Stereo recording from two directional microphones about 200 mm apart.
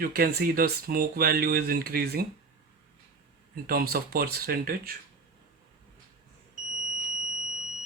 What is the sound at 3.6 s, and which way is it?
Speech, 50° right (ahead or behind).